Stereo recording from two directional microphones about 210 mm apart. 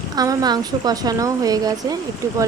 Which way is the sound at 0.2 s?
20° right (ahead or behind).